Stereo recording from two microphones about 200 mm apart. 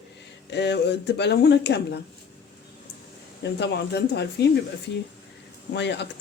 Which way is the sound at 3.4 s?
60° left (ahead or behind).